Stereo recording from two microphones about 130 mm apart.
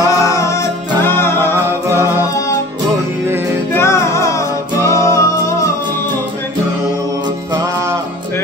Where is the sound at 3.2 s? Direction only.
20° right (ahead or behind).